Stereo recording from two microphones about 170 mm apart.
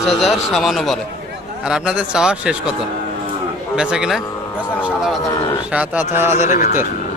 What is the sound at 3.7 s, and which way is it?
A man's voice, 5° right (ahead or behind).